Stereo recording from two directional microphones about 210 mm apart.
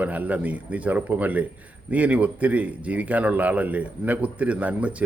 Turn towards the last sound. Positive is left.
turn(degrees=-5)  # may be behind; listen again after turning